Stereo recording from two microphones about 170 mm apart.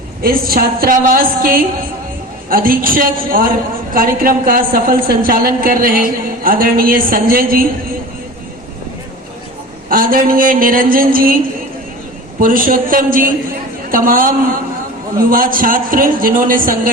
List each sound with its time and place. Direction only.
0.2 s a woman's voice: 60° right (ahead or behind)
9.9 s a woman's voice: 55° right (ahead or behind)
12.4 s a woman's voice: 55° right (ahead or behind)